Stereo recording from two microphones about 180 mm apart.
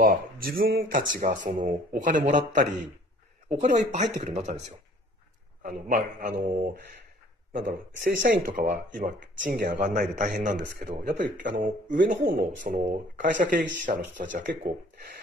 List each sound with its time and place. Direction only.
0.0 s speech: 55° right (ahead or behind)
7.6 s speech: 70° right (ahead or behind)
8.5 s speech: 45° right (ahead or behind)
10.1 s speech: 45° right (ahead or behind)